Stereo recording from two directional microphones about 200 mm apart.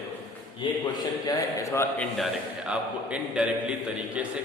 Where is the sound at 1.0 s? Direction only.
15° left (ahead or behind).